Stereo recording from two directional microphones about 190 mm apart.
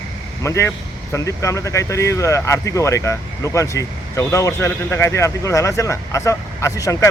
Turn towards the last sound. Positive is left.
turn(degrees=15)  # may be behind; listen again after turning